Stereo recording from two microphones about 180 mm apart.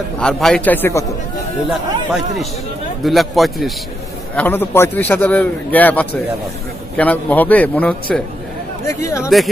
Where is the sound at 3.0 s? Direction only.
Centre (ahead or behind).